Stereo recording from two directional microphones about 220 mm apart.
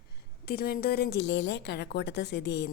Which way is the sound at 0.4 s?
45° left (ahead or behind).